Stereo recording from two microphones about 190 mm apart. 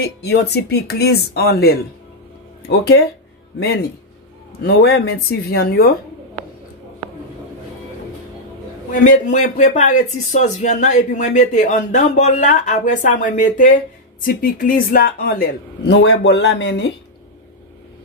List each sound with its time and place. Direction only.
0.0 s speech: 60° left (ahead or behind)
9.0 s speech: 40° left (ahead or behind)
15.9 s speech: 65° left (ahead or behind)